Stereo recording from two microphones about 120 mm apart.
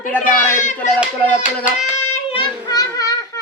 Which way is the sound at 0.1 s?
15° left (ahead or behind).